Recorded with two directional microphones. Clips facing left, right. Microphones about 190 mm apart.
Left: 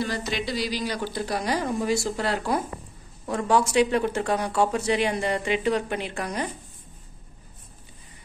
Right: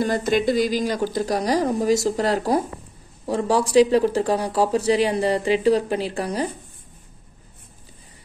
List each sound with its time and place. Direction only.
0.0 s speech: 50° right (ahead or behind); by 6.5 s 35° right (ahead or behind)